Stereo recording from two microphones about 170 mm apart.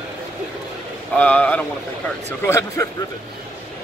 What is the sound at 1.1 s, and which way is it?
Speech, 10° left (ahead or behind).